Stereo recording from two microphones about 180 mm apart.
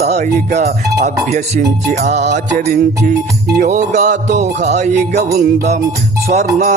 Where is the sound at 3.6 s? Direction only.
40° right (ahead or behind).